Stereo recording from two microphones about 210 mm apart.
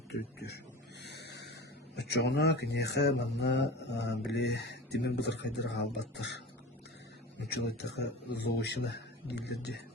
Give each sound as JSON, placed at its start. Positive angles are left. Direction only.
{"t": 0.1, "sound": "speech", "side_deg": 50}
{"t": 1.0, "sound": "vehicle", "side_deg": 55}
{"t": 2.0, "sound": "speech", "side_deg": 55}